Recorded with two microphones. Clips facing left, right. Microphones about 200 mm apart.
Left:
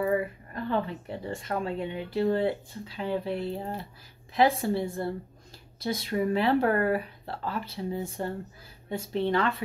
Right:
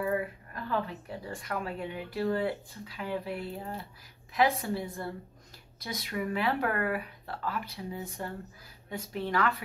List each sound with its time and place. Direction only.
0.7 s speech: 25° left (ahead or behind)